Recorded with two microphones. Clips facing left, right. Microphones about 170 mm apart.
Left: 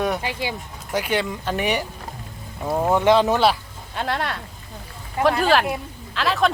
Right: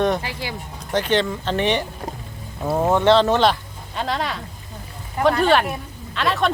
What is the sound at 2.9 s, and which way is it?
Speech, 10° left (ahead or behind).